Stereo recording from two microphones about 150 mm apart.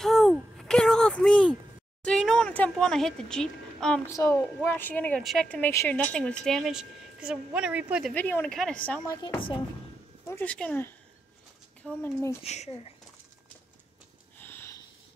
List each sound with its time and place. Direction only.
0.0 s a sound: centre (ahead or behind)
2.0 s a woman's voice: 5° left (ahead or behind)
8.1 s a woman's voice: 10° left (ahead or behind)
9.0 s speech: 25° left (ahead or behind)
10.2 s a woman's voice: 15° left (ahead or behind)
12.4 s speech: 45° left (ahead or behind)
14.4 s sniff: 15° left (ahead or behind)